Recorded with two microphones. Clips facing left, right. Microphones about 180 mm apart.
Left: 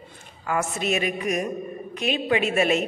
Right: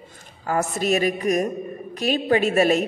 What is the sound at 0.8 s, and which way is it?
A woman's voice, 40° right (ahead or behind).